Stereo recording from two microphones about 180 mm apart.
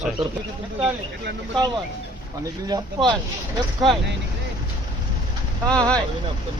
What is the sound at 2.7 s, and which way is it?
Speech, 25° right (ahead or behind).